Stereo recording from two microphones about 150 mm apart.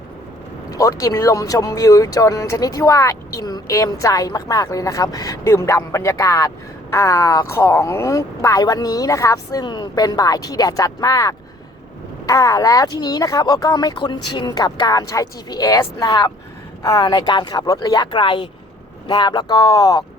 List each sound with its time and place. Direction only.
0.7 s speech: 25° left (ahead or behind)